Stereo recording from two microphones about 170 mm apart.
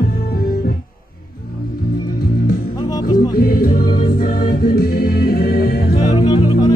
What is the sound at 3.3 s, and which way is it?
Music, 55° left (ahead or behind).